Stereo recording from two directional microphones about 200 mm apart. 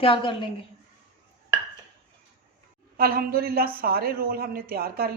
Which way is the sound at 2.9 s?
45° right (ahead or behind).